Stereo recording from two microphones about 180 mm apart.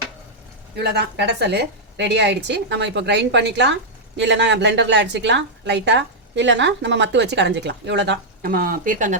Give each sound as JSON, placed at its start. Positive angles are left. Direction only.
{"t": 0.8, "sound": "a woman's voice", "side_deg": -65}
{"t": 8.4, "sound": "speech", "side_deg": -55}